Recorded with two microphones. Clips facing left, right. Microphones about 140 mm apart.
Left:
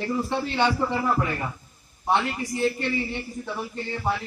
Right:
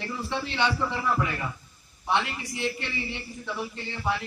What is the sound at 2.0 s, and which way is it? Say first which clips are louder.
A man's voice: left 3 dB; 45° left (ahead or behind).